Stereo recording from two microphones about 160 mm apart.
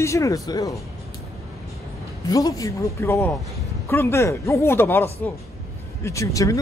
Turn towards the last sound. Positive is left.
turn(degrees=20)  # may be behind; listen again after turning